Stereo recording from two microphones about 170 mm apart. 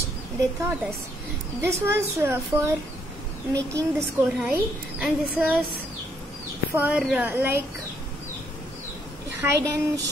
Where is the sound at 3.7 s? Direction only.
15° right (ahead or behind).